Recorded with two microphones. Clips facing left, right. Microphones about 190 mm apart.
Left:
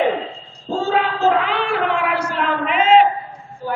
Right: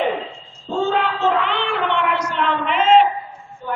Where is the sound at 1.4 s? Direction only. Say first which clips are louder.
Left 2 dB; 5° left (ahead or behind).